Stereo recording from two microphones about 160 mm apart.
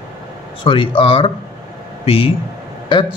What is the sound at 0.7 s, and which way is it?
A man's voice, 30° left (ahead or behind).